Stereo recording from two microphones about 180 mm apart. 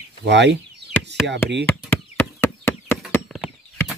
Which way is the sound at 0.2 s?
80° right.